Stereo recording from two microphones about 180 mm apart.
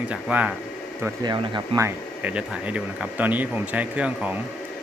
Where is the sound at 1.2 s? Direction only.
25° right (ahead or behind); by 4.4 s 5° right (ahead or behind).